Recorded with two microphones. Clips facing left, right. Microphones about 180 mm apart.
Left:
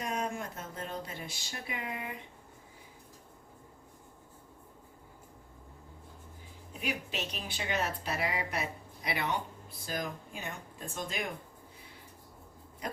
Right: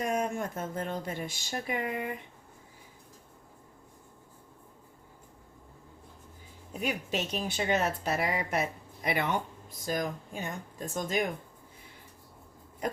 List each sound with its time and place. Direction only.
0.0 s speech: 50° right (ahead or behind)
6.7 s speech: 45° right (ahead or behind)